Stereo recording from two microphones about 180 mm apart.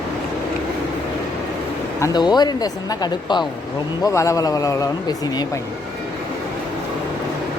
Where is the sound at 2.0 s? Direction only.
25° left (ahead or behind).